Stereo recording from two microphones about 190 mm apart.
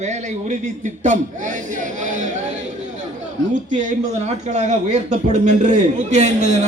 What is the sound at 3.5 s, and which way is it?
A man's voice, 40° right (ahead or behind).